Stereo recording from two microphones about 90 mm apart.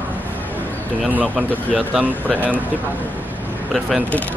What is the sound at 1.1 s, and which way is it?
Speech, 15° right (ahead or behind).